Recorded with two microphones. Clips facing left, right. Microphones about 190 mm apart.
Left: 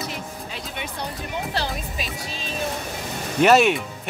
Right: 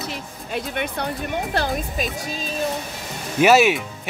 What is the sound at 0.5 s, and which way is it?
Speech, 55° right (ahead or behind).